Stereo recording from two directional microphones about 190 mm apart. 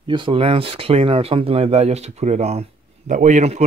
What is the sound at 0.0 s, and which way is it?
Speech, 25° right (ahead or behind).